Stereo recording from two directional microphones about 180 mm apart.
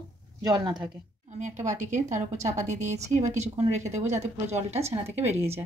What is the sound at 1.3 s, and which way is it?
A woman's voice, 40° right (ahead or behind).